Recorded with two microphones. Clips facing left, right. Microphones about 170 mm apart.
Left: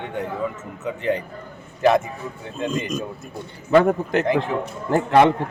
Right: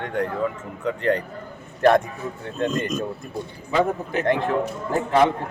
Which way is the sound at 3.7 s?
75° left (ahead or behind).